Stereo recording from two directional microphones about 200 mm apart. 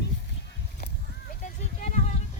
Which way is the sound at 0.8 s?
50° left (ahead or behind).